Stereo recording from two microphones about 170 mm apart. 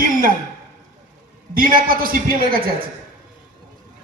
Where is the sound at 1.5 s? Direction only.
55° right (ahead or behind).